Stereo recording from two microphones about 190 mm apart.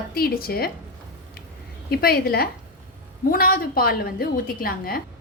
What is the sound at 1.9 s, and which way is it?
A woman's voice, 55° left (ahead or behind).